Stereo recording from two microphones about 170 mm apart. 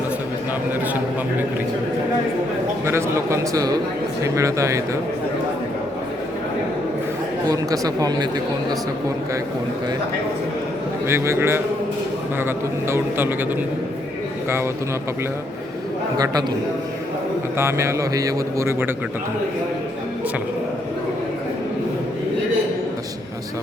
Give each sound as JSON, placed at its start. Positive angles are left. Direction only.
{"t": 2.8, "sound": "speech", "side_deg": -15}
{"t": 7.4, "sound": "speech", "side_deg": -20}
{"t": 11.1, "sound": "speech", "side_deg": -15}
{"t": 16.1, "sound": "speech", "side_deg": -20}
{"t": 17.6, "sound": "speech", "side_deg": -15}